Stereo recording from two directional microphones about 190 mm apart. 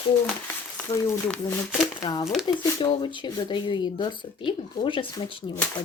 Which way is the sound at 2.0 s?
20° left (ahead or behind).